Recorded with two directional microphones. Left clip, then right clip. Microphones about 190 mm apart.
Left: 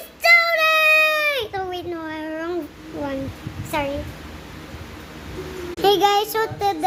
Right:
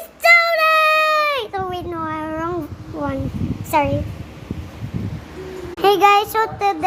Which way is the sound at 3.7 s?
15° right (ahead or behind).